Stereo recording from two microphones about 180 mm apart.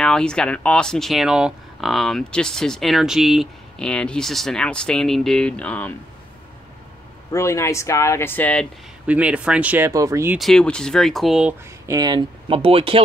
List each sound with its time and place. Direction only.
0.0 s speech: 5° left (ahead or behind)
7.3 s speech: 15° left (ahead or behind)
9.0 s speech: 5° right (ahead or behind)
10.3 s speech: centre (ahead or behind)
11.8 s speech: 20° right (ahead or behind)